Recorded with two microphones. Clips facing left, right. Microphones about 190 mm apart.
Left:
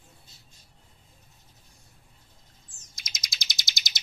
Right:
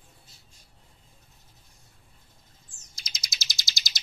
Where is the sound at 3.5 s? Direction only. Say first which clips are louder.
Left 1 dB; 20° left (ahead or behind).